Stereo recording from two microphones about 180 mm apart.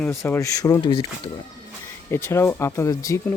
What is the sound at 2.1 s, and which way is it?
Speech, 15° left (ahead or behind).